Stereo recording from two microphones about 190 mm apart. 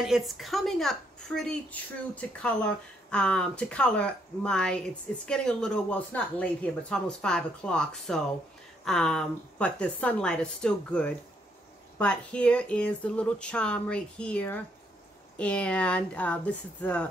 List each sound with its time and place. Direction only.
0.0 s a woman's voice: centre (ahead or behind)